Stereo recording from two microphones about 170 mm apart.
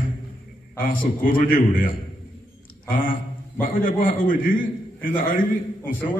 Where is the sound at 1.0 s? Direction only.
55° left (ahead or behind).